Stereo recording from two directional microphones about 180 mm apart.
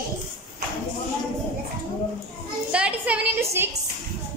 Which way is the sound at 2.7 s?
5° right (ahead or behind).